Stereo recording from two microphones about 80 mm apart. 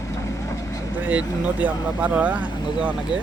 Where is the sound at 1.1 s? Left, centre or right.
Centre.